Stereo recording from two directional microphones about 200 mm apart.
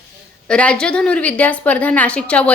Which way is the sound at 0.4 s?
5° left (ahead or behind).